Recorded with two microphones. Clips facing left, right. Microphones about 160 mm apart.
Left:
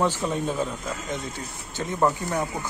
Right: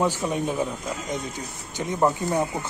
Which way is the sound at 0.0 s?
15° right (ahead or behind).